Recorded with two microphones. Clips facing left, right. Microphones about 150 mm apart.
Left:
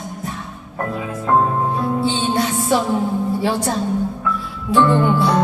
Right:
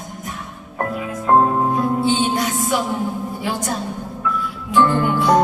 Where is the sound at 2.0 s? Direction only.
30° left (ahead or behind).